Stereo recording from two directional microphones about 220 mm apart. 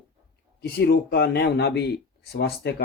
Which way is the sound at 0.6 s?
45° left (ahead or behind).